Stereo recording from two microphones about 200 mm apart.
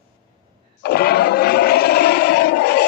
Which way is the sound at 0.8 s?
50° left (ahead or behind).